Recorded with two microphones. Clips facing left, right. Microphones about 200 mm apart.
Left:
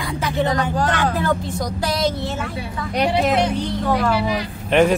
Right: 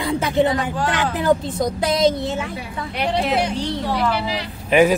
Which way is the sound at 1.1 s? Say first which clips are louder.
Right 3 dB; 20° right (ahead or behind).